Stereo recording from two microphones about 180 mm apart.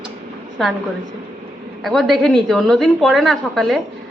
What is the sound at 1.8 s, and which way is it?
A woman's voice, centre (ahead or behind).